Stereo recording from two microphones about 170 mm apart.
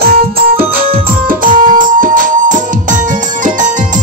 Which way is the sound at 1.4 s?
50° right (ahead or behind).